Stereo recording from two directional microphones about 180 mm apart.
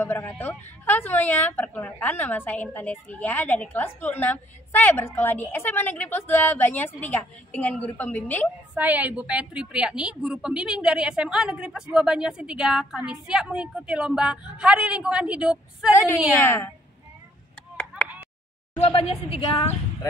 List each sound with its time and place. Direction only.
0.0 s a woman's voice: 10° left (ahead or behind)
8.7 s a woman's voice: 10° right (ahead or behind)
16.3 s a woman's voice: 10° left (ahead or behind)
18.8 s speech: 30° left (ahead or behind)